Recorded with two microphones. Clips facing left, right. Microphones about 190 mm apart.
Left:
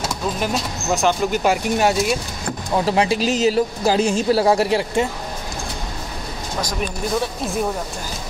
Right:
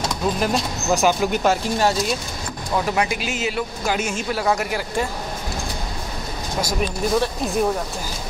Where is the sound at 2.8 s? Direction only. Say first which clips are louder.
Left 5 dB; 30° left (ahead or behind).